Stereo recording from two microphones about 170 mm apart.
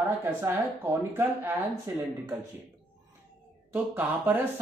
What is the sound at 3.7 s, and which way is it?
Speech, 10° right (ahead or behind).